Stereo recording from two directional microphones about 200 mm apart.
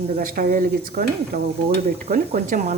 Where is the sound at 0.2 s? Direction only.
45° right (ahead or behind).